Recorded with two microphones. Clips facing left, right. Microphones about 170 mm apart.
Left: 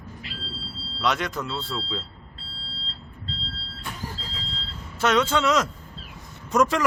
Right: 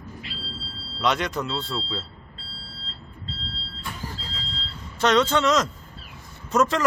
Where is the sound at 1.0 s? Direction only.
Centre (ahead or behind).